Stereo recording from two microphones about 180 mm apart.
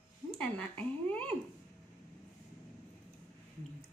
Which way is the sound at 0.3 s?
5° left (ahead or behind).